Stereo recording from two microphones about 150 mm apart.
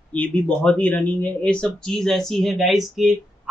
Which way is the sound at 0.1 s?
10° left (ahead or behind).